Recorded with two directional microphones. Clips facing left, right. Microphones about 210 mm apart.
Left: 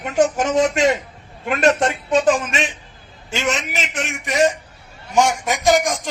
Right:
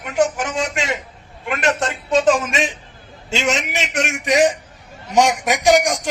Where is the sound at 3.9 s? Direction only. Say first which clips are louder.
Right 4 dB; 90° right.